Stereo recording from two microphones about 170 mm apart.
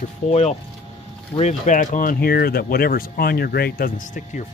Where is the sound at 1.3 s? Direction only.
45° left (ahead or behind).